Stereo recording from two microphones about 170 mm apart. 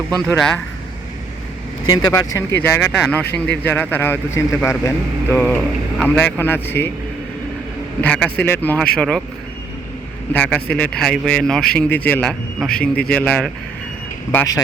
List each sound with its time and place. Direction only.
0.3 s speech: 5° left (ahead or behind)
1.9 s speech: 25° left (ahead or behind)
8.0 s speech: 5° left (ahead or behind)
10.3 s speech: 5° left (ahead or behind)
14.3 s speech: 20° left (ahead or behind)